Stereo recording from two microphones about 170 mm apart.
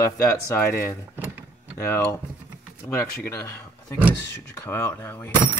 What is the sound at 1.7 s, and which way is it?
Speech, 15° left (ahead or behind).